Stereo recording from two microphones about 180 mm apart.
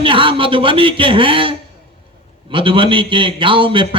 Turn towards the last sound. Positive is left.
turn(degrees=-30)  # may be behind; listen again after turning